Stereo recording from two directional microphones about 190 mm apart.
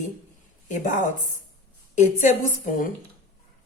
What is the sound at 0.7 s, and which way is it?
A woman's voice, 40° left (ahead or behind).